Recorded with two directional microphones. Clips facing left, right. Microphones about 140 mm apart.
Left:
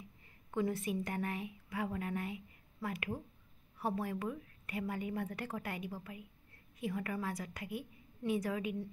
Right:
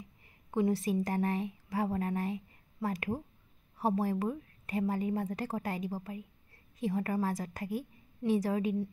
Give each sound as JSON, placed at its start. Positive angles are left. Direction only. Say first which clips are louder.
{"t": 0.5, "sound": "a woman's voice", "louder": "right 6 dB", "side_deg": -30}